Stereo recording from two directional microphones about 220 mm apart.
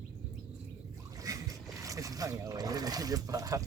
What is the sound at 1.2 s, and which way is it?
Boat, 15° right (ahead or behind).